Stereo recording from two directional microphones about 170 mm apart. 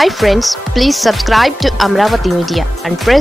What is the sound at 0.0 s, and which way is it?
Speech, centre (ahead or behind).